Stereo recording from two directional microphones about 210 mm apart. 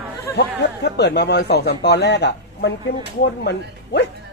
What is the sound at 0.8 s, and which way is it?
Speech, 55° left (ahead or behind).